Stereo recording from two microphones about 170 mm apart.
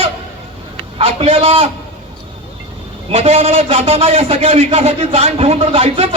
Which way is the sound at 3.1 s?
35° right (ahead or behind).